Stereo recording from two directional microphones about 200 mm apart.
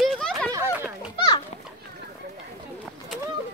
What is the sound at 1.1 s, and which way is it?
Children playing, 25° left (ahead or behind).